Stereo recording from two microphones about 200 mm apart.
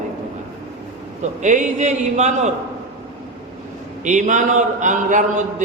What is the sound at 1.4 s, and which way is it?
A man's voice, 35° right (ahead or behind).